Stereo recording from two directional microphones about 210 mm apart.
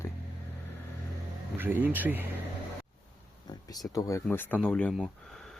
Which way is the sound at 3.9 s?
15° left (ahead or behind).